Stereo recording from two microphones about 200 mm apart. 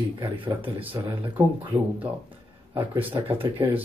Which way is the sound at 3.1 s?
25° right (ahead or behind).